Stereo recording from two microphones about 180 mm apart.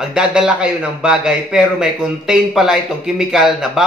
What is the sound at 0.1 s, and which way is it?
A man's voice, 5° right (ahead or behind).